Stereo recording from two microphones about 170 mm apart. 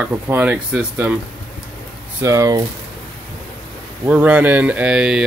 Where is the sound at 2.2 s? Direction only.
20° right (ahead or behind).